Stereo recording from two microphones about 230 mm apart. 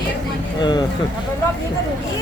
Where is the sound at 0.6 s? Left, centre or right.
Centre.